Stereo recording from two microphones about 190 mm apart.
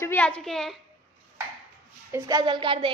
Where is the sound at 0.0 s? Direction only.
10° left (ahead or behind).